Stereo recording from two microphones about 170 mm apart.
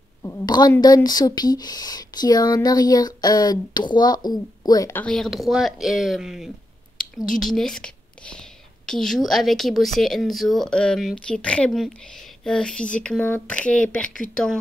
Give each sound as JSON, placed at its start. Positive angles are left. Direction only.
{"t": 0.2, "sound": "speech", "side_deg": 20}
{"t": 5.0, "sound": "a woman's voice", "side_deg": 0}